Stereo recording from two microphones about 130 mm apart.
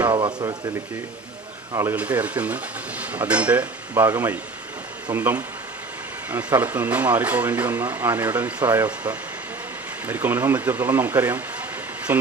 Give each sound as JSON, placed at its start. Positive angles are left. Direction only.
{"t": 0.1, "sound": "a sound", "side_deg": -35}
{"t": 1.7, "sound": "a man's voice", "side_deg": -20}
{"t": 2.0, "sound": "speech", "side_deg": -10}